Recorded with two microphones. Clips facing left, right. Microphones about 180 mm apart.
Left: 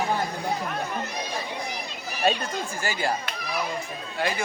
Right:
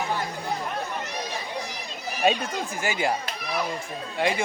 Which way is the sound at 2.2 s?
15° right (ahead or behind).